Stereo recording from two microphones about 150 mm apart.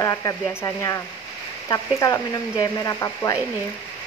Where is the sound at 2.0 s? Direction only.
20° left (ahead or behind).